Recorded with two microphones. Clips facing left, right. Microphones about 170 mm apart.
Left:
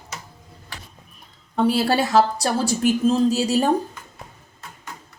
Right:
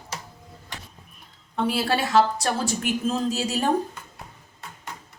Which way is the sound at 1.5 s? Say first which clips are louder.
Left 5 dB; 40° left (ahead or behind).